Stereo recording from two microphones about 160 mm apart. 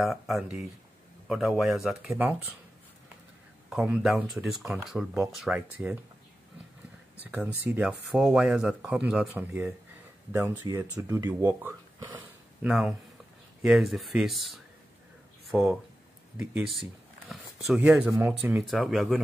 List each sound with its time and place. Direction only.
0.0 s speech: centre (ahead or behind)
3.7 s speech: 5° right (ahead or behind)
7.2 s speech: 10° right (ahead or behind)
12.0 s speech: 25° right (ahead or behind)
12.6 s speech: centre (ahead or behind)
16.3 s speech: 5° right (ahead or behind)
18.7 s speech: centre (ahead or behind)